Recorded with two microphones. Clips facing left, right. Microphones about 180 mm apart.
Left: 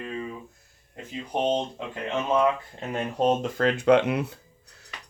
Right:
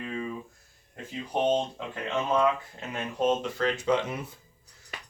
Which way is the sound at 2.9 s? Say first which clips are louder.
Left 3 dB; 35° left (ahead or behind).